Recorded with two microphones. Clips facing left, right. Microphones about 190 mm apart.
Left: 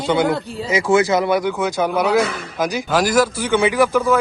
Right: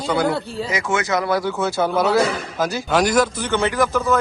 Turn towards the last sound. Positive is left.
turn(degrees=10)  # may be behind; listen again after turning